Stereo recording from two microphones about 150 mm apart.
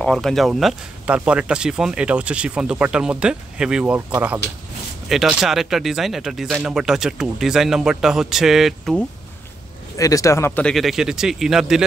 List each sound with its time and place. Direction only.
0.0 s speech: 5° left (ahead or behind)
9.9 s speech: 20° left (ahead or behind)
10.6 s speech: centre (ahead or behind)